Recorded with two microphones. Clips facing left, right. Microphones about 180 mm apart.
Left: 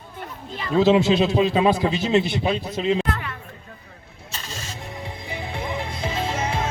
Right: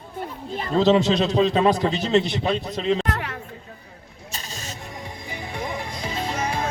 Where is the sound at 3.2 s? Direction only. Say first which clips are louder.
Right 3 dB; 70° right (ahead or behind).